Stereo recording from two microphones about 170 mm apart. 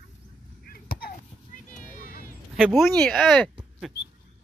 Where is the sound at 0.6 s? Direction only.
60° left (ahead or behind).